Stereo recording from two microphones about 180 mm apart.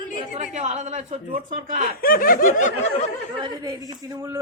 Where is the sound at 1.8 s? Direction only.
55° left (ahead or behind).